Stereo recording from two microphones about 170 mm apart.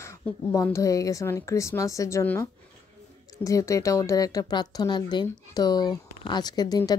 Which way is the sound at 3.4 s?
20° left (ahead or behind).